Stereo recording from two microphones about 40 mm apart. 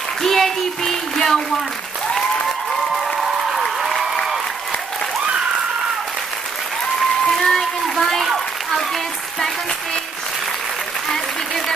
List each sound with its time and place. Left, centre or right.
0.2 s speech: centre
2.9 s applause: centre
7.2 s a sound: centre